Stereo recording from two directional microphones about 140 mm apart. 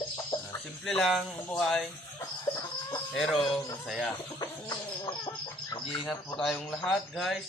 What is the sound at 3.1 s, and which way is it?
Speech, centre (ahead or behind).